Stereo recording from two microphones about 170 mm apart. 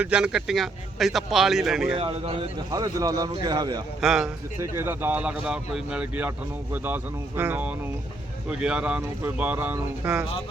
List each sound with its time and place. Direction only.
0.0 s a man's voice: 5° right (ahead or behind)
2.0 s speech: 35° right (ahead or behind)
2.6 s speech: 20° right (ahead or behind)
4.0 s a man's voice: centre (ahead or behind)
4.6 s speech: 15° right (ahead or behind)